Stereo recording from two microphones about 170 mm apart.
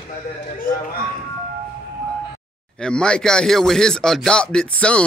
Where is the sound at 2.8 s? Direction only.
5° left (ahead or behind).